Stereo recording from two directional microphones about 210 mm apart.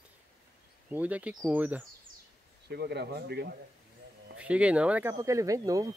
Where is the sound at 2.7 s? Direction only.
50° right (ahead or behind).